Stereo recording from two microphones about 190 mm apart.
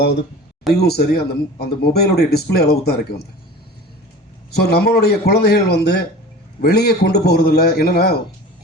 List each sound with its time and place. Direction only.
0.7 s speech: 55° left (ahead or behind)
4.5 s speech: 55° left (ahead or behind)